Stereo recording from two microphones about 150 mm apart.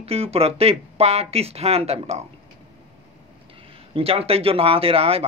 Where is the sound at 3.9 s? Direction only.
40° right (ahead or behind).